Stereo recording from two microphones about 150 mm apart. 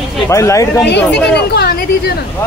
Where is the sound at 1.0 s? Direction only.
10° left (ahead or behind).